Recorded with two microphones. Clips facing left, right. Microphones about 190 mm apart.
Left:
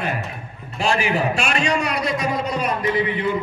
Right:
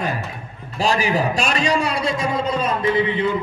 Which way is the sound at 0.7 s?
35° right (ahead or behind).